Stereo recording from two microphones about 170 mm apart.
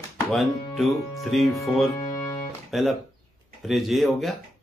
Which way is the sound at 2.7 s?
Centre (ahead or behind).